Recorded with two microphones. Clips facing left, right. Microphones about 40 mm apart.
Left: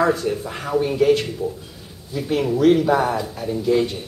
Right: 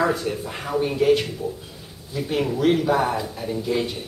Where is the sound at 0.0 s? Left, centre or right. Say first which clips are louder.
Left 3 dB; centre.